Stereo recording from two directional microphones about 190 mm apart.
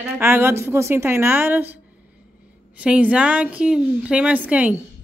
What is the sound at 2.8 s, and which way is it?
A woman's voice, 5° right (ahead or behind).